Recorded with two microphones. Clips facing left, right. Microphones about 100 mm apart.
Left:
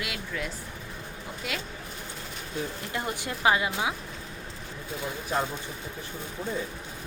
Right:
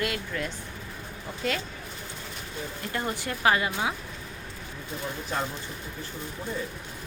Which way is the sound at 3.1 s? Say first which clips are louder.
Even; 20° left (ahead or behind).